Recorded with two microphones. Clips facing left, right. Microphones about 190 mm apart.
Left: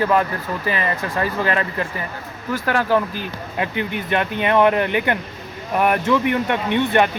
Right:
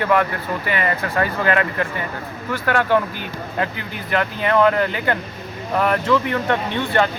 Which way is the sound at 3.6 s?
20° left (ahead or behind).